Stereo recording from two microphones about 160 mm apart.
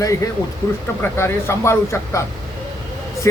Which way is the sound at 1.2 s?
15° left (ahead or behind).